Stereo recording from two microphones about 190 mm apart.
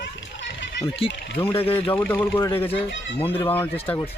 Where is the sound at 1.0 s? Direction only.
30° left (ahead or behind).